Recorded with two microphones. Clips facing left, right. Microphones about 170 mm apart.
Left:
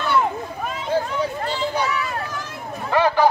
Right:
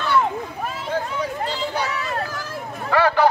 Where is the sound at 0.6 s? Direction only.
5° right (ahead or behind).